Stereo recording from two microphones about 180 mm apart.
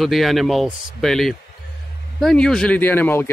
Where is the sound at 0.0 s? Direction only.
Centre (ahead or behind).